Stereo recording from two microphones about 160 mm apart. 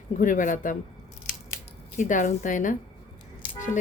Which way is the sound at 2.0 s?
55° left (ahead or behind).